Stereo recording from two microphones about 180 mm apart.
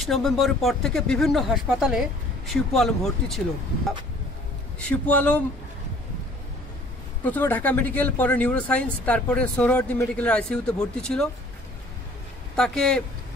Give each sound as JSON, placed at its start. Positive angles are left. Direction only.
{"t": 0.0, "sound": "speech", "side_deg": 0}
{"t": 5.0, "sound": "speech", "side_deg": 10}
{"t": 7.2, "sound": "speech", "side_deg": 10}
{"t": 12.5, "sound": "speech", "side_deg": 5}